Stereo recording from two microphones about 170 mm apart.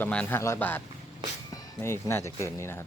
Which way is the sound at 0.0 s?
10° left (ahead or behind).